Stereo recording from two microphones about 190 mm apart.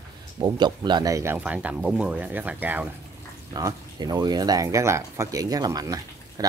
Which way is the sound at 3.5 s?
20° right (ahead or behind).